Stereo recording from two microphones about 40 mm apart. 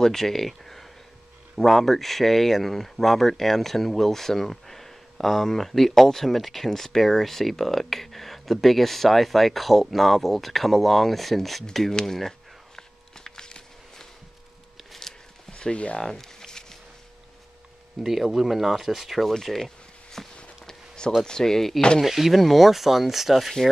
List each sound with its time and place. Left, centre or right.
0.0 s speech: centre
11.9 s speech: centre
12.2 s a sound: centre
15.5 s speech: left
16.0 s a sound: centre
18.0 s speech: centre
19.4 s a sound: centre
21.2 s speech: centre
22.0 s speech: centre